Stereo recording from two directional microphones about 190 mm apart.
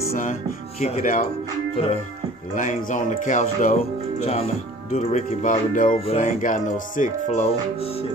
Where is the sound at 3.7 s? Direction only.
35° left (ahead or behind).